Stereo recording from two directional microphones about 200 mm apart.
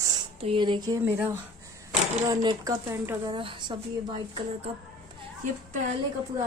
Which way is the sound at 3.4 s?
25° right (ahead or behind).